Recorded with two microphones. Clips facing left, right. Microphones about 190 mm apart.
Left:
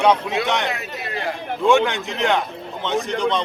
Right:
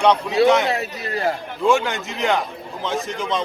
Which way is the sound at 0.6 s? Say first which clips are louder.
Right 3 dB; 35° right (ahead or behind).